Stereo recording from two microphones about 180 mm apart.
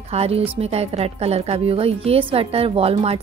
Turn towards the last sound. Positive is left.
turn(degrees=-35)  # may be behind; listen again after turning